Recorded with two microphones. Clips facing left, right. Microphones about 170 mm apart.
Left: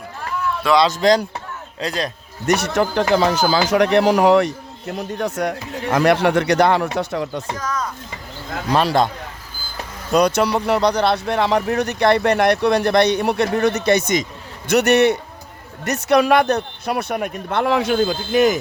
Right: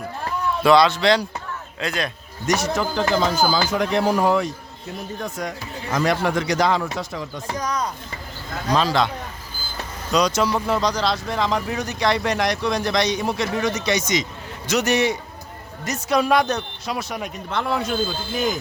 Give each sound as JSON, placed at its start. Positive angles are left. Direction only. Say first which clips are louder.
{"t": 0.9, "sound": "speech", "louder": "left 3 dB", "side_deg": 40}
{"t": 2.5, "sound": "speech", "louder": "left 4 dB", "side_deg": 65}
{"t": 7.5, "sound": "speech", "louder": "even", "side_deg": -15}
{"t": 8.7, "sound": "speech", "louder": "left 3 dB", "side_deg": 60}
{"t": 10.1, "sound": "speech", "louder": "left 4 dB", "side_deg": 55}
{"t": 14.7, "sound": "speech", "louder": "left 6 dB", "side_deg": 65}
{"t": 17.7, "sound": "speech", "louder": "left 6 dB", "side_deg": 80}